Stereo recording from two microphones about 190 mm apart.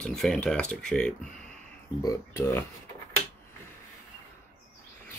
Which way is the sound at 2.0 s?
15° left (ahead or behind).